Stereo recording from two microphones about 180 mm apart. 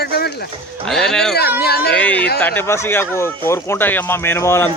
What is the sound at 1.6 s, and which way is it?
Speech, 60° left (ahead or behind).